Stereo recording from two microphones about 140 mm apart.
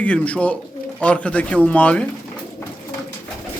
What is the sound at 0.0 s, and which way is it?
Speech, 10° left (ahead or behind).